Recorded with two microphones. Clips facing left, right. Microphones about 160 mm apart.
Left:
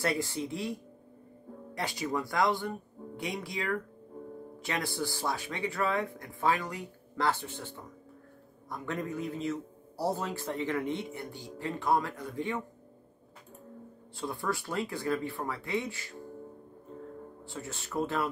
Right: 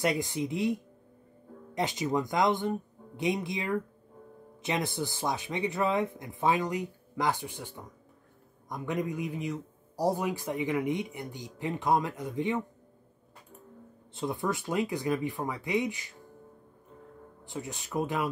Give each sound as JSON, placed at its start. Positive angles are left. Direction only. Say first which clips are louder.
{"t": 0.0, "sound": "a man's voice", "louder": "right 2 dB", "side_deg": -15}
{"t": 1.8, "sound": "a man's voice", "louder": "right 4 dB", "side_deg": -20}
{"t": 14.1, "sound": "a man's voice", "louder": "right 3 dB", "side_deg": -20}
{"t": 17.5, "sound": "a man's voice", "louder": "right 4 dB", "side_deg": -15}